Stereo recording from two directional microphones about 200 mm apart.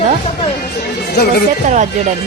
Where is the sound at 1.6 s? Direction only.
35° right (ahead or behind).